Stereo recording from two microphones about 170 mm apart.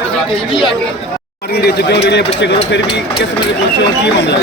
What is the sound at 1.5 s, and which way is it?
Speech, 70° left (ahead or behind).